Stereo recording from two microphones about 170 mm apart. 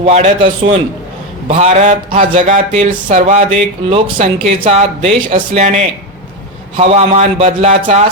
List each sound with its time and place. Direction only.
0.0 s speech: 40° right (ahead or behind)
1.5 s speech: 45° right (ahead or behind)
3.8 s speech: 35° right (ahead or behind)
4.4 s speech: 45° right (ahead or behind)